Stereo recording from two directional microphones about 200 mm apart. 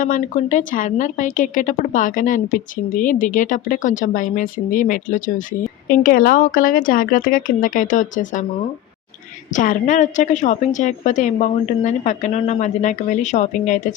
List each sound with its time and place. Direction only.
0.0 s a woman's voice: 40° left (ahead or behind)
9.5 s a woman's voice: 40° left (ahead or behind)